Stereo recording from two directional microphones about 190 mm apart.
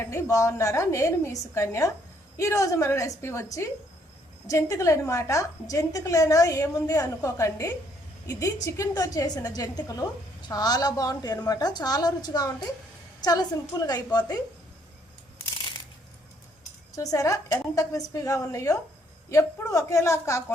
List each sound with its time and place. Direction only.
0.0 s a woman's voice: 15° left (ahead or behind)
16.9 s a woman's voice: 20° left (ahead or behind)